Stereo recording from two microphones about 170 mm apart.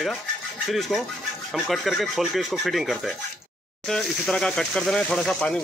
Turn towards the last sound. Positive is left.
turn(degrees=5)  # may be behind; listen again after turning